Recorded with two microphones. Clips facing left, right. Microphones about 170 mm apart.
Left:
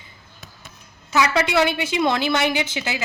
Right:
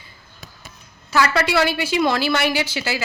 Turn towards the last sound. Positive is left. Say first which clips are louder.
# right 1 dB
turn(degrees=20)  # may be behind; listen again after turning